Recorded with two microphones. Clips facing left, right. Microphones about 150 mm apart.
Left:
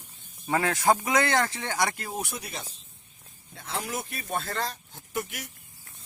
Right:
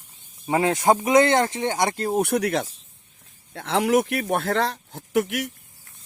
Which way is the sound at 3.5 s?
70° right (ahead or behind).